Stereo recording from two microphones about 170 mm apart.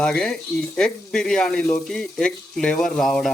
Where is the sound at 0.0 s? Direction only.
5° left (ahead or behind).